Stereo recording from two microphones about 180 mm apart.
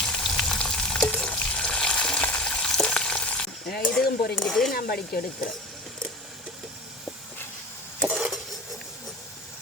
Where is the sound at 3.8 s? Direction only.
5° left (ahead or behind).